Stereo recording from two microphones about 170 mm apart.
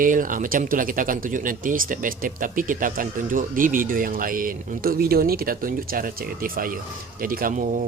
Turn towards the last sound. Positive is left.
turn(degrees=-50)  # may be behind; listen again after turning